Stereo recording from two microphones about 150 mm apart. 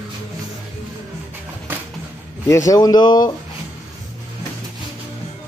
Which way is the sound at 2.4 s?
20° left (ahead or behind).